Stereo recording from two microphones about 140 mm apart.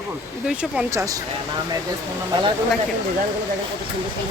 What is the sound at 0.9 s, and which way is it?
Speech, 25° right (ahead or behind).